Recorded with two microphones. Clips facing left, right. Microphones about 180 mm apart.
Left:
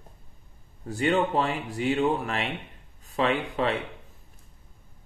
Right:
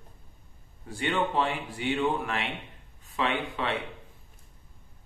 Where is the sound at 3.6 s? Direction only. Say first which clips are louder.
Left 6 dB; 40° left (ahead or behind).